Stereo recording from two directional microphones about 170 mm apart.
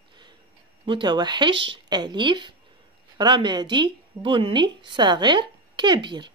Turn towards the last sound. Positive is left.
turn(degrees=-25)  # may be behind; listen again after turning